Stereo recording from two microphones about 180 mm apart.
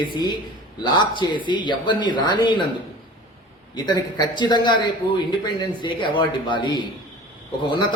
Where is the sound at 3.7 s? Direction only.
25° left (ahead or behind).